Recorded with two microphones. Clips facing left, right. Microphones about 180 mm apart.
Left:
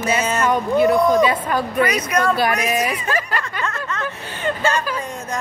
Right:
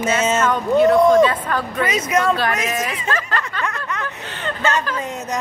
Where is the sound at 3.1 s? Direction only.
10° left (ahead or behind).